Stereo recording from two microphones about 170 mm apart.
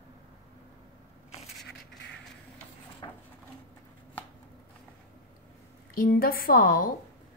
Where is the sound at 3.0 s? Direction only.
25° left (ahead or behind).